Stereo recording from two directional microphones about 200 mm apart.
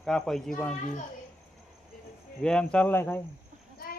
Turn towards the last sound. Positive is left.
turn(degrees=10)  # may be behind; listen again after turning